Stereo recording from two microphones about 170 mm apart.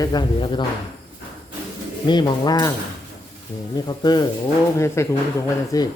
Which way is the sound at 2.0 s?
25° left (ahead or behind).